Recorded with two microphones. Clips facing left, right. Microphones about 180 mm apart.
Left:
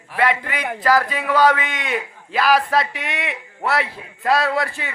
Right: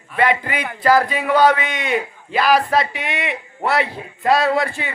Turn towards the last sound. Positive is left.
turn(degrees=0)  # may be behind; listen again after turning